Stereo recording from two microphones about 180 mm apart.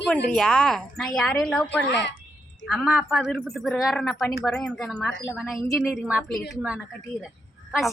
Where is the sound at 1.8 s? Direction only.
75° left (ahead or behind).